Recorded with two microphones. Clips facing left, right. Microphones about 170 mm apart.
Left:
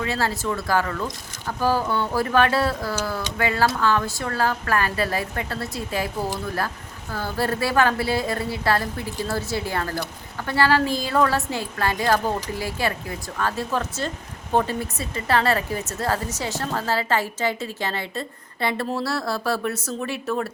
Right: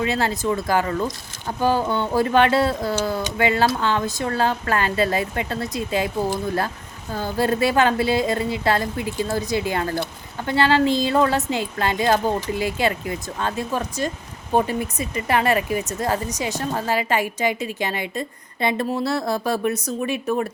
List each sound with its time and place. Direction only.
0.0 s speech: 20° right (ahead or behind)